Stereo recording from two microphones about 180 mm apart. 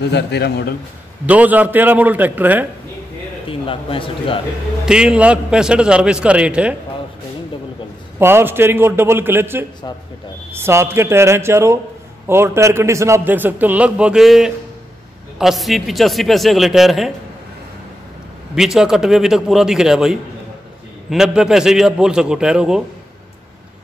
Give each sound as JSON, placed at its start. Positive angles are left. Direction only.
{"t": 0.1, "sound": "a man's voice", "side_deg": 70}
{"t": 1.2, "sound": "a man's voice", "side_deg": -10}
{"t": 3.4, "sound": "a man's voice", "side_deg": 30}
{"t": 4.8, "sound": "a man's voice", "side_deg": -5}
{"t": 8.2, "sound": "a man's voice", "side_deg": -10}
{"t": 18.5, "sound": "a man's voice", "side_deg": 0}